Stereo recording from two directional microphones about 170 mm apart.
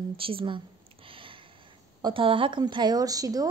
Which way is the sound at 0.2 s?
30° right (ahead or behind).